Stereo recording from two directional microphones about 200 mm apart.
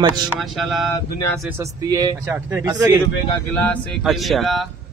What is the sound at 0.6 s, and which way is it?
Speech, centre (ahead or behind).